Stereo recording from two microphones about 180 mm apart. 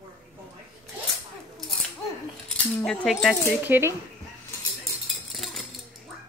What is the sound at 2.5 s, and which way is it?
Cutlery, centre (ahead or behind).